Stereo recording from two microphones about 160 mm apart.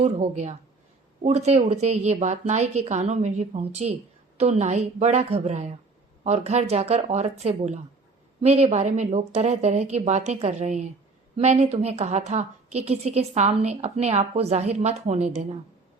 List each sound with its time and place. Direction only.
0.0 s a woman's voice: 45° right (ahead or behind)